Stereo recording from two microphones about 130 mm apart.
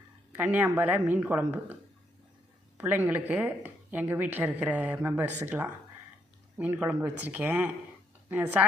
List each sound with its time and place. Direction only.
0.3 s a woman's voice: 10° right (ahead or behind)